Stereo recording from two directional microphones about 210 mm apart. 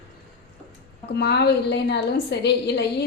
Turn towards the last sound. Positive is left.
turn(degrees=55)  # may be behind; listen again after turning